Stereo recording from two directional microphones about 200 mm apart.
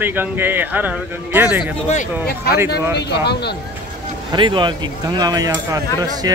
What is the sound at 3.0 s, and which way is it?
Speech, 55° left (ahead or behind).